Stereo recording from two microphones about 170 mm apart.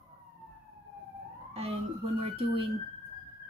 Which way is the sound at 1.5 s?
35° right (ahead or behind).